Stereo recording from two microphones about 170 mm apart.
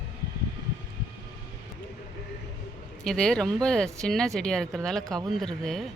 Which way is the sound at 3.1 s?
5° left (ahead or behind).